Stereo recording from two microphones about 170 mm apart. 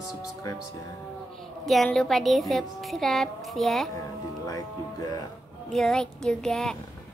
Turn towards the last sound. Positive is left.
turn(degrees=5)  # may be behind; listen again after turning